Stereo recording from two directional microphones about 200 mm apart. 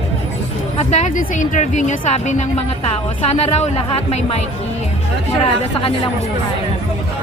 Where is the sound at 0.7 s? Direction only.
35° left (ahead or behind).